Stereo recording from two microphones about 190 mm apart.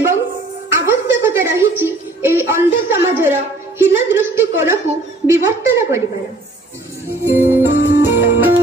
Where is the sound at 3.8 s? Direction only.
10° right (ahead or behind).